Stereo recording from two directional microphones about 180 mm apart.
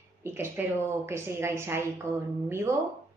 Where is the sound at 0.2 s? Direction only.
15° right (ahead or behind).